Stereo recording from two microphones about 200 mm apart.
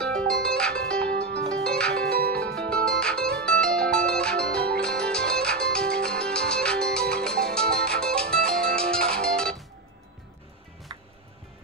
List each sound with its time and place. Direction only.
0.0 s music: 5° left (ahead or behind)
10.9 s music: 25° right (ahead or behind)